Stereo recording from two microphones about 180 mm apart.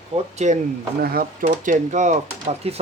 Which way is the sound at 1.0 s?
55° right (ahead or behind).